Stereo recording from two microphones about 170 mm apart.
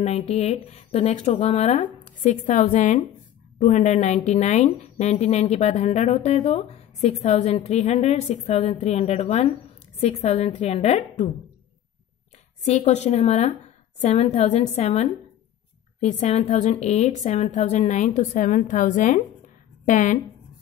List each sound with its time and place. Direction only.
0.0 s a woman's voice: 35° left (ahead or behind)
12.6 s a woman's voice: 40° left (ahead or behind)